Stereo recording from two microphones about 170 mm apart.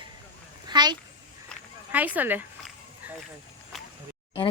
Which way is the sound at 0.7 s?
25° right (ahead or behind).